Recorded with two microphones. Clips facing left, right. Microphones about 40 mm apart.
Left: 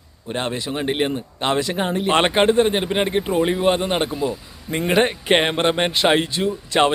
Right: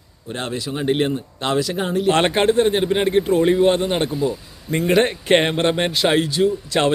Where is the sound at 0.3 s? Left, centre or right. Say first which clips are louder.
Left 1 dB; left.